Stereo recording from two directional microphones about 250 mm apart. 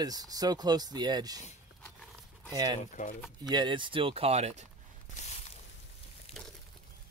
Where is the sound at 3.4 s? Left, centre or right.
Centre.